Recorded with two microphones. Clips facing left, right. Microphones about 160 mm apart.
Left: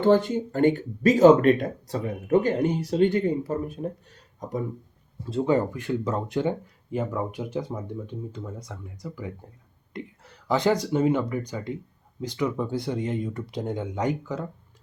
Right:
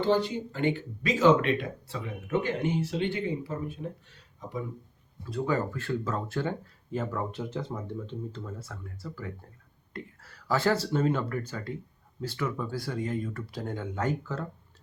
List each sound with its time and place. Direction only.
0.0 s speech: 50° left (ahead or behind)
5.2 s speech: 25° left (ahead or behind)